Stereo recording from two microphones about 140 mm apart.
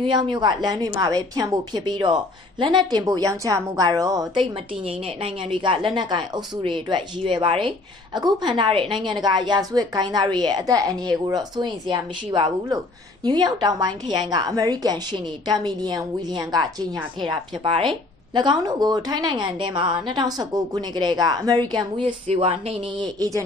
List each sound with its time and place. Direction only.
0.0 s a woman's voice: 35° right (ahead or behind)
4.4 s a woman's voice: 40° right (ahead or behind)
23.1 s a woman's voice: 25° right (ahead or behind)